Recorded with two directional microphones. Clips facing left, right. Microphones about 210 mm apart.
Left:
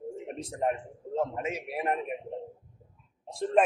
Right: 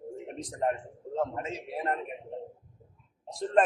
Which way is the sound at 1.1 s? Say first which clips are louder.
Left 1 dB; 10° left (ahead or behind).